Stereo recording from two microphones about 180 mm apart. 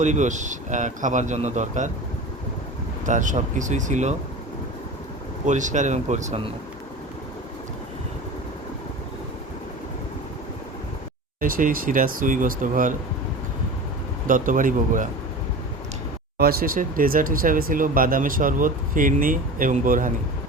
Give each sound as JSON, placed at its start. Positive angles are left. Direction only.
{"t": 0.0, "sound": "speech", "side_deg": -40}
{"t": 3.1, "sound": "speech", "side_deg": -45}
{"t": 5.5, "sound": "speech", "side_deg": -45}
{"t": 11.3, "sound": "speech", "side_deg": -50}
{"t": 14.3, "sound": "speech", "side_deg": -50}
{"t": 16.4, "sound": "speech", "side_deg": -55}